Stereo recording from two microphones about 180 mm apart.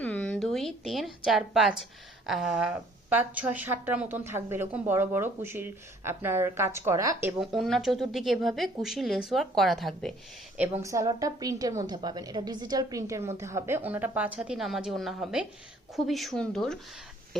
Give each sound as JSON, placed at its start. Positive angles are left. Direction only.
{"t": 0.0, "sound": "a woman's voice", "side_deg": 5}
{"t": 7.4, "sound": "speech", "side_deg": 0}
{"t": 10.8, "sound": "speech", "side_deg": -15}